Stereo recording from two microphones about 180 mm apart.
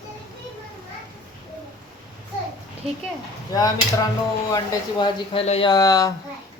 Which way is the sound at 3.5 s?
20° left (ahead or behind).